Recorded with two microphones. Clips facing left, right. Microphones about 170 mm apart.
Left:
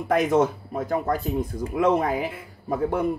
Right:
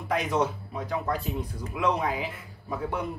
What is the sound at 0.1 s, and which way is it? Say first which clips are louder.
Speech: left 6 dB; 50° left (ahead or behind).